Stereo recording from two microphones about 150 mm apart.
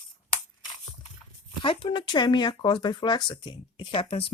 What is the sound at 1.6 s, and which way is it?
Speech, 35° left (ahead or behind).